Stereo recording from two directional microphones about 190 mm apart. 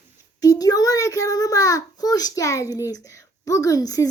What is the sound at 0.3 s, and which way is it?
A child's voice, 20° left (ahead or behind).